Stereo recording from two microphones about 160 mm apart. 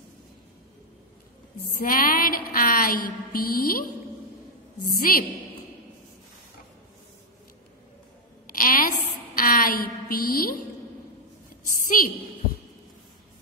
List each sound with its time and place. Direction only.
1.7 s mantra: 60° left (ahead or behind)
4.8 s a woman's voice: 65° left (ahead or behind)
8.5 s a sound: 60° left (ahead or behind)